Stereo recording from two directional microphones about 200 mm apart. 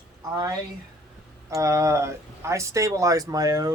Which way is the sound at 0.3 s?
20° right (ahead or behind).